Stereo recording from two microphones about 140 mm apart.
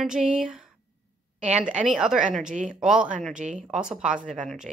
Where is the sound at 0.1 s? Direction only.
5° right (ahead or behind).